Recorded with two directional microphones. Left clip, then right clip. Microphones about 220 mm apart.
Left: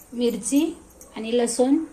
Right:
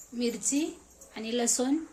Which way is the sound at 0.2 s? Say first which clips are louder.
Left 8 dB; 10° right (ahead or behind).